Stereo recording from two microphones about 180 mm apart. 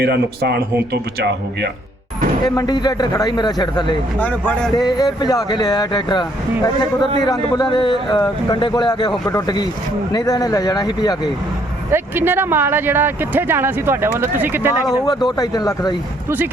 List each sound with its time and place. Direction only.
0.0 s speech: 65° right (ahead or behind)
2.6 s speech: 20° left (ahead or behind)
4.2 s speech: 10° left (ahead or behind)
4.7 s speech: 20° left (ahead or behind)
11.9 s speech: 10° right (ahead or behind)
14.8 s speech: 20° left (ahead or behind)